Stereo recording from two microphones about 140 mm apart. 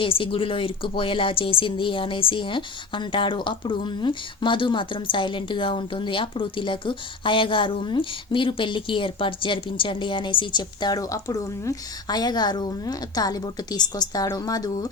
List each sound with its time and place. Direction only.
0.0 s a woman's voice: 40° left (ahead or behind)